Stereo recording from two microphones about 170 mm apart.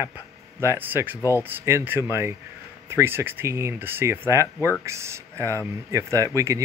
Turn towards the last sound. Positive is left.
turn(degrees=-20)  # may be behind; listen again after turning